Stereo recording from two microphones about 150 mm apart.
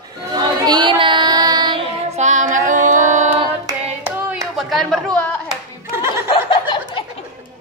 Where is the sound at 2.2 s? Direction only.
55° right (ahead or behind).